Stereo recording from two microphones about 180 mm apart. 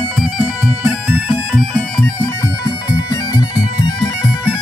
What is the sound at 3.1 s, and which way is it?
Bagpipes, 20° left (ahead or behind).